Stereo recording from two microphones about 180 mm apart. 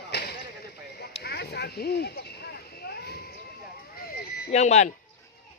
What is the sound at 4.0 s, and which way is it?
Fire alarm, 55° left (ahead or behind).